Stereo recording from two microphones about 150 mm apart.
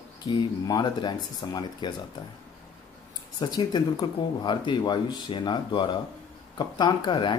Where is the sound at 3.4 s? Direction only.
25° left (ahead or behind).